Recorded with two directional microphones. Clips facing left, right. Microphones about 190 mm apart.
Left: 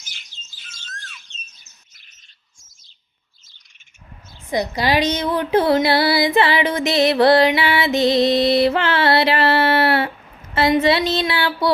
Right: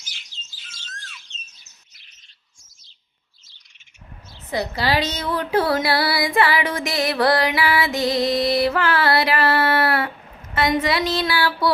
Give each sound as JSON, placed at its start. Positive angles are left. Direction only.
{"t": 0.0, "sound": "bird", "side_deg": 50}
{"t": 4.4, "sound": "speech", "side_deg": 15}